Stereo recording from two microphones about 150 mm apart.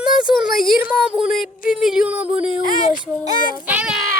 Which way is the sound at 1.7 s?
5° right (ahead or behind).